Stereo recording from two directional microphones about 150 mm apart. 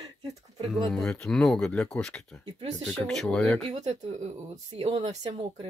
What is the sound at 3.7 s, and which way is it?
Speech, 45° right (ahead or behind).